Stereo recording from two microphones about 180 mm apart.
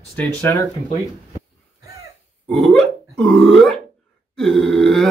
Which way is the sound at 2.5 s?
Centre (ahead or behind).